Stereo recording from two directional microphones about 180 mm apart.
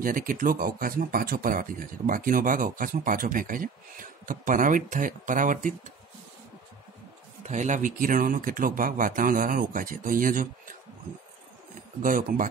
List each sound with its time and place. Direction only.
0.0 s speech: 50° right (ahead or behind)
7.4 s speech: 45° right (ahead or behind)
12.0 s speech: 45° right (ahead or behind)